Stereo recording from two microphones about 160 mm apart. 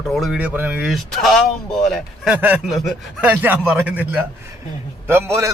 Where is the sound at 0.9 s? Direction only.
Centre (ahead or behind).